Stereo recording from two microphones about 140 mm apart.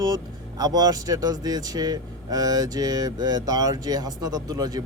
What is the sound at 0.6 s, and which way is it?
Speech, 30° right (ahead or behind).